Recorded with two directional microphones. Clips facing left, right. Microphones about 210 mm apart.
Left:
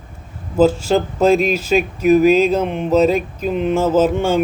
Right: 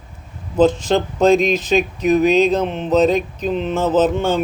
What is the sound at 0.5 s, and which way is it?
Speech, 10° left (ahead or behind).